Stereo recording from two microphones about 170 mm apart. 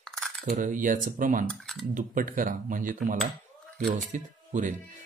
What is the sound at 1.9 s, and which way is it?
Speech, 50° right (ahead or behind).